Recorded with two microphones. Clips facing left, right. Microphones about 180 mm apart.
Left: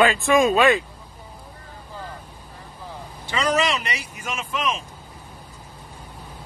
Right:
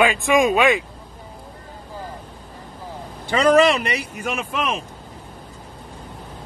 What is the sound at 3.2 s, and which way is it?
Speech, 55° right (ahead or behind).